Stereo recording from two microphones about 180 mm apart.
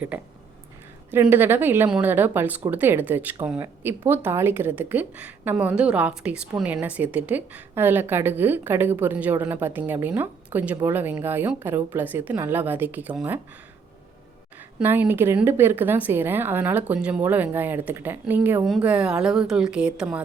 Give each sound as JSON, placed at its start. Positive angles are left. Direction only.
{"t": 1.3, "sound": "a woman's voice", "side_deg": -10}
{"t": 14.8, "sound": "a woman's voice", "side_deg": -10}